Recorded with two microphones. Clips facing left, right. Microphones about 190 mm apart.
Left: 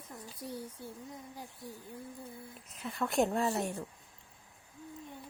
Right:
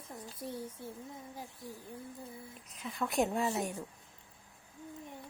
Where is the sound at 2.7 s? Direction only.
Centre (ahead or behind).